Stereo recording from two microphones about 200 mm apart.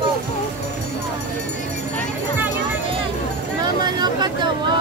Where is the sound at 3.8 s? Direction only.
20° right (ahead or behind).